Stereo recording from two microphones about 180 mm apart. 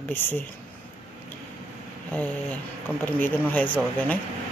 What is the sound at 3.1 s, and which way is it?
Speech, 10° left (ahead or behind).